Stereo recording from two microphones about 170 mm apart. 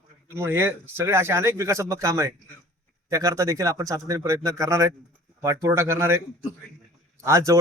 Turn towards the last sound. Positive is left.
turn(degrees=-15)  # may be behind; listen again after turning